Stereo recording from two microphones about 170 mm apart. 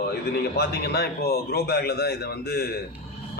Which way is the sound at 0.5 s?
70° left (ahead or behind).